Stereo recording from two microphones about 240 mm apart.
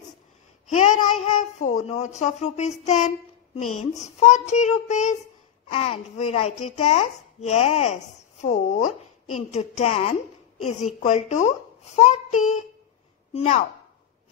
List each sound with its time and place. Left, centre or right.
0.7 s speech: left